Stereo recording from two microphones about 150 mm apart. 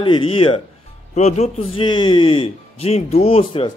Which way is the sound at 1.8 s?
30° left (ahead or behind).